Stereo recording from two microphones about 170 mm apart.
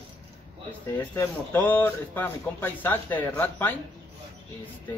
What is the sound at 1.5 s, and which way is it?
Speech, 10° left (ahead or behind).